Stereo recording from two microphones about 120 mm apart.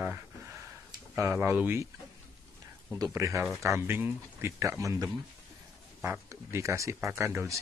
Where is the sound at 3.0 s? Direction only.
25° right (ahead or behind).